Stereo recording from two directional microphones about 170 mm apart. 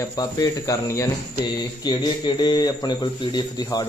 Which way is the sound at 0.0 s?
20° left (ahead or behind).